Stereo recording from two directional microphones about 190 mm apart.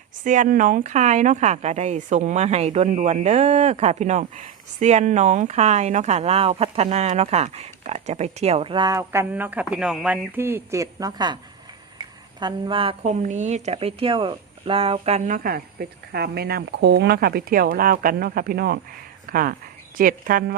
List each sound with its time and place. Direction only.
0.3 s a woman's voice: 45° right (ahead or behind)